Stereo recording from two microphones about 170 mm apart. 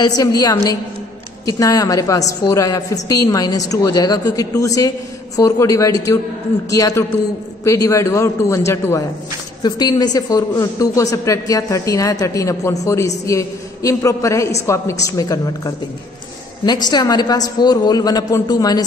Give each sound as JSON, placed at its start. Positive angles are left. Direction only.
{"t": 0.0, "sound": "a woman's voice", "side_deg": 20}
{"t": 1.6, "sound": "a woman's voice", "side_deg": 20}